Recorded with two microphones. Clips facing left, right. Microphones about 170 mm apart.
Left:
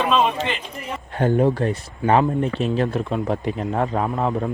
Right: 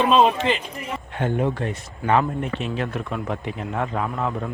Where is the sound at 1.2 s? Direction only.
40° left (ahead or behind).